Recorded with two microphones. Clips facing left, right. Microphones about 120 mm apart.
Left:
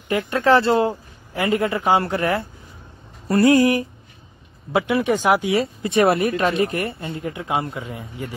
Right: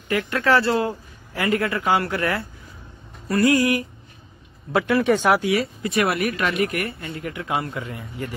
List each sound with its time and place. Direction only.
0.1 s speech: 20° left (ahead or behind)
4.7 s speech: 15° left (ahead or behind)
5.4 s speech: 25° left (ahead or behind)